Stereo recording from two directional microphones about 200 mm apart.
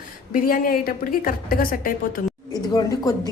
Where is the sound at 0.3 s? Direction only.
45° left (ahead or behind).